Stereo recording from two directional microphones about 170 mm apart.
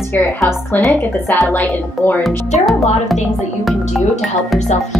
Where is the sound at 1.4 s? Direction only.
5° left (ahead or behind).